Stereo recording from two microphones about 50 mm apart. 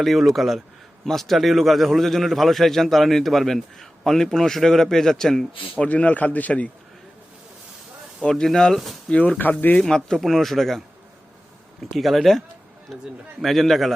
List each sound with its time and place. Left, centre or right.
0.0 s a man's voice: centre
5.8 s a man's voice: left
8.3 s speech: centre
9.0 s speech: left
9.4 s a man's voice: left
9.7 s a man's voice: centre